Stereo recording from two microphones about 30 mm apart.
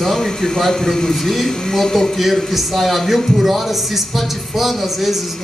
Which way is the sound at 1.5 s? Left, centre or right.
Centre.